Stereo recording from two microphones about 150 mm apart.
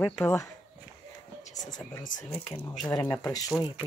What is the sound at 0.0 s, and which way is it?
Speech, 10° left (ahead or behind).